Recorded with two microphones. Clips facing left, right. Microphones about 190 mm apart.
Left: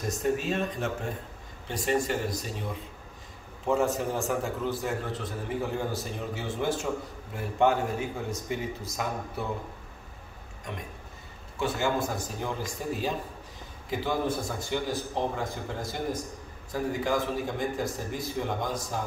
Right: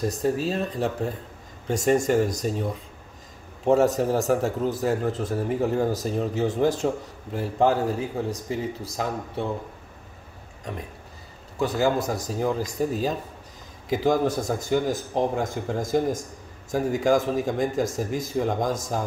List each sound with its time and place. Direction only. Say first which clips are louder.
0.0 s a man's voice: right 4 dB; 35° right (ahead or behind)
11.5 s speech: right 5 dB; 35° right (ahead or behind)
14.2 s a man's voice: right 6 dB; 40° right (ahead or behind)